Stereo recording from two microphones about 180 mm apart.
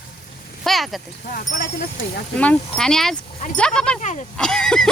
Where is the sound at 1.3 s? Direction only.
55° left (ahead or behind).